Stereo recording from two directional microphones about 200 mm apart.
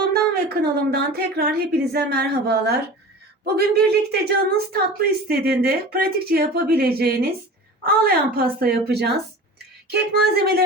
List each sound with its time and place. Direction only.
0.6 s a woman's voice: 50° right (ahead or behind)